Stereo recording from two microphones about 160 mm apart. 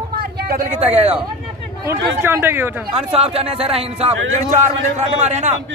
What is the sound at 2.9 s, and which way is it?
A man's voice, 40° right (ahead or behind).